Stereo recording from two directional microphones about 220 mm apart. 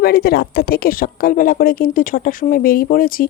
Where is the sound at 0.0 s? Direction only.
45° left (ahead or behind).